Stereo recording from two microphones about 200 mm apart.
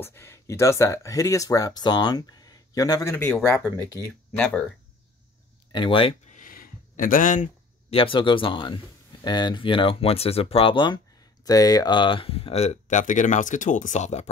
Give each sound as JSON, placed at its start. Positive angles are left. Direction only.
{"t": 0.0, "sound": "speech", "side_deg": 10}
{"t": 5.7, "sound": "speech", "side_deg": 25}
{"t": 6.3, "sound": "a sound", "side_deg": 45}
{"t": 7.9, "sound": "speech", "side_deg": 25}